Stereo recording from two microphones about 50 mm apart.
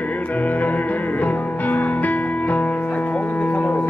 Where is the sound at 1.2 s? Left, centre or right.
Left.